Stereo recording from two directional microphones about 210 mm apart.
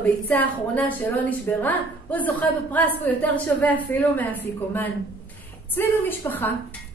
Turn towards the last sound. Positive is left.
turn(degrees=10)  # may be behind; listen again after turning